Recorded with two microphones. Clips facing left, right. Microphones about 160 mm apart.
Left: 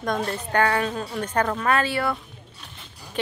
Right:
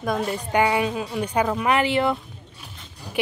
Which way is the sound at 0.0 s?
5° right (ahead or behind).